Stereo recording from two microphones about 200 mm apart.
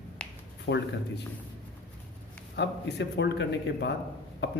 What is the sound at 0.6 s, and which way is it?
Speech, 60° left (ahead or behind).